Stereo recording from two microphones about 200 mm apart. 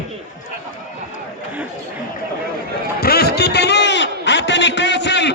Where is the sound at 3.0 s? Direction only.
50° left (ahead or behind).